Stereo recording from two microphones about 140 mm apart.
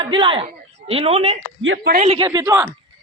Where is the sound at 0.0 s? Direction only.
35° right (ahead or behind).